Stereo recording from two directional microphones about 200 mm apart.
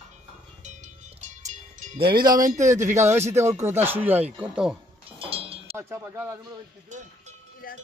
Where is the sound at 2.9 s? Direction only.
15° right (ahead or behind).